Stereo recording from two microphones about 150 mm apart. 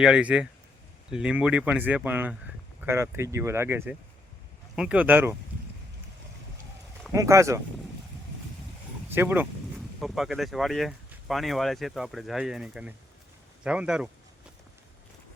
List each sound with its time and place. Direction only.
0.0 s speech: 5° right (ahead or behind)
7.1 s speech: 20° right (ahead or behind)
9.1 s speech: 15° right (ahead or behind)
10.0 s speech: centre (ahead or behind)